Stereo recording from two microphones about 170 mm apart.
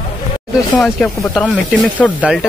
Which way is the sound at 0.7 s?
5° left (ahead or behind).